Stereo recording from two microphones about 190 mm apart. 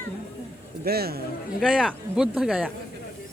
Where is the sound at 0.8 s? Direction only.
55° right (ahead or behind).